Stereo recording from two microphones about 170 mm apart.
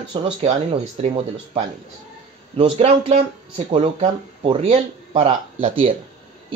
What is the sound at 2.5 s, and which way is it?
Speech, 35° right (ahead or behind).